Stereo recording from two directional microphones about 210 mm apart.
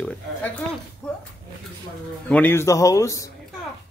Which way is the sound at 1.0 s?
5° left (ahead or behind).